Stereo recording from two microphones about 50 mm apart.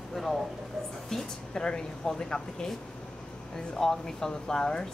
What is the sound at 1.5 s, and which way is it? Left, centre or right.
Speech, centre.